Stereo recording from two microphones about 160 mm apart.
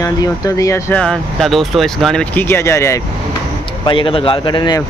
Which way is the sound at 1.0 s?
Centre (ahead or behind).